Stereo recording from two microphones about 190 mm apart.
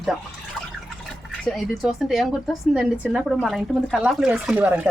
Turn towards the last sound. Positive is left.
turn(degrees=-10)  # may be behind; listen again after turning